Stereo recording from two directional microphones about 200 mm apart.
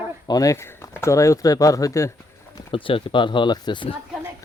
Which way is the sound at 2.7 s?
25° left (ahead or behind).